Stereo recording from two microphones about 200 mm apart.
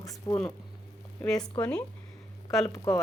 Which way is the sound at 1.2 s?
5° left (ahead or behind).